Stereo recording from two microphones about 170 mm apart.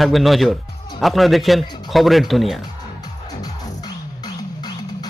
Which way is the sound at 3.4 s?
20° left (ahead or behind).